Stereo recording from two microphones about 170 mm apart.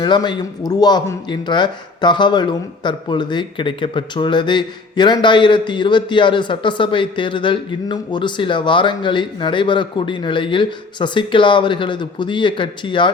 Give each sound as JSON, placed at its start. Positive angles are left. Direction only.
{"t": 0.0, "sound": "speech", "side_deg": 25}